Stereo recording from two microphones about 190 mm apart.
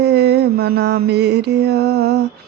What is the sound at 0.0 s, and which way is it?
Mantra, 60° right (ahead or behind).